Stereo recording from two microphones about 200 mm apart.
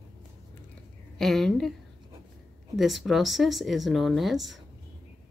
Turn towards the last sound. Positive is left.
turn(degrees=0)  # may be behind; listen again after turning